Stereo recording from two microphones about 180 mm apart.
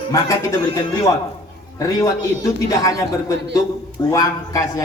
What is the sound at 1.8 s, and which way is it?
A man's voice, 20° left (ahead or behind).